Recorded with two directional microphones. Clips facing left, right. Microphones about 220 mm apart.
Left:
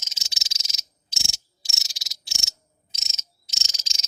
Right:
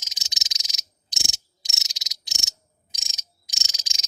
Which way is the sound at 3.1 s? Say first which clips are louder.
Right 1 dB; 15° right (ahead or behind).